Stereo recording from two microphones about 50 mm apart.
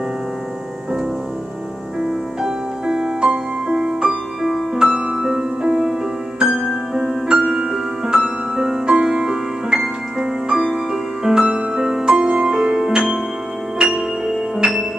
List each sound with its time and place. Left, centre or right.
2.0 s music: centre
4.4 s music: centre
4.7 s music: centre
6.5 s music: centre
6.9 s music: centre